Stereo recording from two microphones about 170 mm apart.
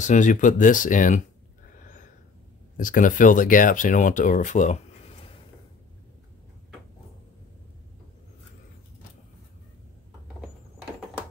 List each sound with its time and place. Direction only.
0.0 s speech: 50° left (ahead or behind)
1.8 s snort: 50° left (ahead or behind)
2.8 s speech: 50° left (ahead or behind)